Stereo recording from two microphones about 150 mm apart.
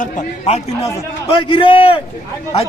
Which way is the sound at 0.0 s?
50° left (ahead or behind).